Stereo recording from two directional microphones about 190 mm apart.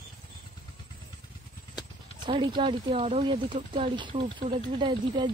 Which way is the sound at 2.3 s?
25° right (ahead or behind).